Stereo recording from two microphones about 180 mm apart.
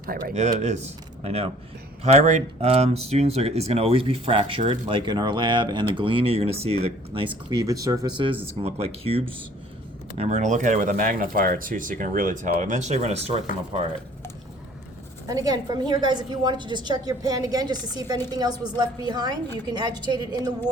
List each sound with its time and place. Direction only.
0.0 s speech: 55° right (ahead or behind)
0.3 s a woman's voice: 40° right (ahead or behind)
15.3 s a woman's voice: 20° right (ahead or behind)